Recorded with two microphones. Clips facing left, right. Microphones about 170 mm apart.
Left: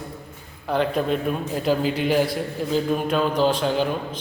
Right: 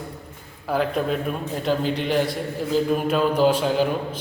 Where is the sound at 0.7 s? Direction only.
Centre (ahead or behind).